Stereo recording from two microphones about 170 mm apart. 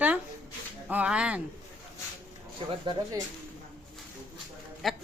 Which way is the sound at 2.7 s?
30° right (ahead or behind).